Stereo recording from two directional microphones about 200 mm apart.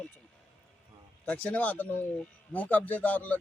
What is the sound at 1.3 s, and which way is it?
Speech, 5° left (ahead or behind).